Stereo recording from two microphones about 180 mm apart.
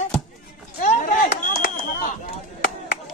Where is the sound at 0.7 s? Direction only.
45° left (ahead or behind).